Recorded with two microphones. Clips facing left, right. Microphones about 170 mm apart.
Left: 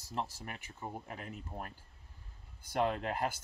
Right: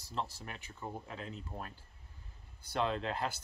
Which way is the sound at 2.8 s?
15° left (ahead or behind).